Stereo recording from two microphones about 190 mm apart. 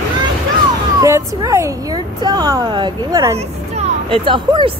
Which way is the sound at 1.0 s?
15° right (ahead or behind).